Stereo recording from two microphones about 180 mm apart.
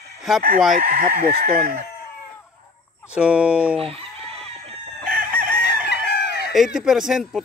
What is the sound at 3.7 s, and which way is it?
Speech, 35° right (ahead or behind).